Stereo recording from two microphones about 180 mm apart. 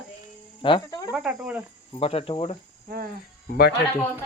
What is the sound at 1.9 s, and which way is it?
Speech, 35° left (ahead or behind).